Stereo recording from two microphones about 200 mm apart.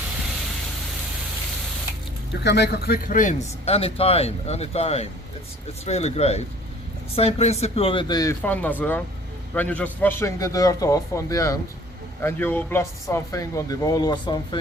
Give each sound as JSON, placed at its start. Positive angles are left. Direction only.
{"t": 2.4, "sound": "speech", "side_deg": 60}